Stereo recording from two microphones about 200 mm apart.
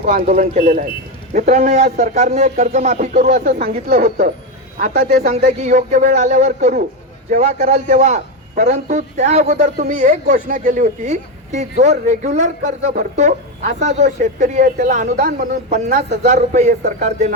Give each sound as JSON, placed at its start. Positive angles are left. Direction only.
{"t": 0.0, "sound": "speech", "side_deg": -45}